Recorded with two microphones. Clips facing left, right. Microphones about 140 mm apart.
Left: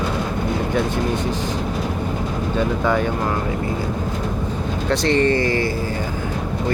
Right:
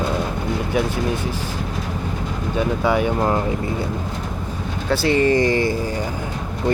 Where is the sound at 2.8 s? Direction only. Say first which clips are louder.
Right 2 dB; 10° right (ahead or behind).